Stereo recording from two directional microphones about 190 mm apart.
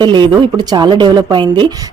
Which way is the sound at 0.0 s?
25° right (ahead or behind).